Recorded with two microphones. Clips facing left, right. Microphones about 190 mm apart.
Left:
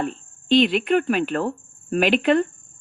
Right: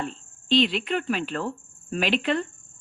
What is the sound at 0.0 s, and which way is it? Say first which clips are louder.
Cricket: left 6 dB; 55° left (ahead or behind).